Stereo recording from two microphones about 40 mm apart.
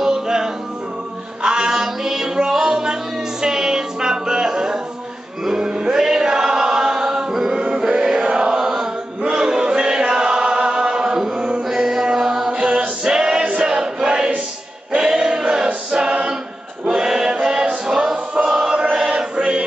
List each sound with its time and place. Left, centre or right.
0.0 s music: centre
5.4 s chant: centre
11.6 s mantra: centre
12.5 s music: centre
13.6 s choir: centre
17.8 s music: centre
18.5 s choir: centre
19.3 s chant: right